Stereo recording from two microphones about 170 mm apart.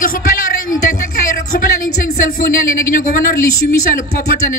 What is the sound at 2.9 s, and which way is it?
Speech, 55° left (ahead or behind).